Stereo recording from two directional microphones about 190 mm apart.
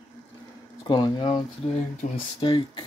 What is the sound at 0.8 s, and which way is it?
Speech, 20° left (ahead or behind).